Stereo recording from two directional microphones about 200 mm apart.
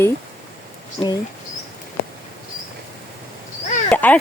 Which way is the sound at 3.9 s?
5° left (ahead or behind).